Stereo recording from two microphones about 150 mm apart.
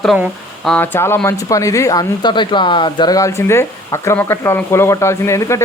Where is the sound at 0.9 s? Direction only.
15° left (ahead or behind).